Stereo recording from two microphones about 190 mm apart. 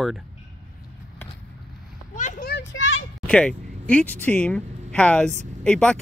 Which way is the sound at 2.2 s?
45° left (ahead or behind).